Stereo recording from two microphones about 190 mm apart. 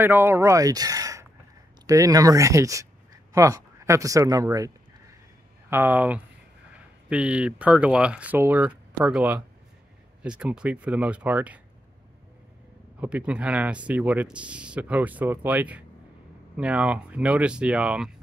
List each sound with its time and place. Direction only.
0.0 s speech: 10° right (ahead or behind)
13.0 s speech: 5° right (ahead or behind)